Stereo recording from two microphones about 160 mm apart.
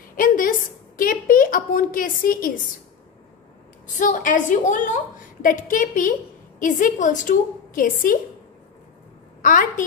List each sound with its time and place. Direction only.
0.1 s a sound: 60° left (ahead or behind)
3.8 s a woman's voice: 55° left (ahead or behind)
9.4 s a woman's voice: 55° left (ahead or behind)